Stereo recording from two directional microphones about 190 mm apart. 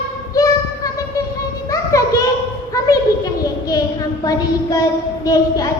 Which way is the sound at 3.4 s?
20° left (ahead or behind).